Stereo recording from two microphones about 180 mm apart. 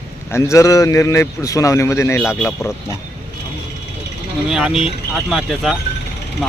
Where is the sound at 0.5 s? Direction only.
15° left (ahead or behind).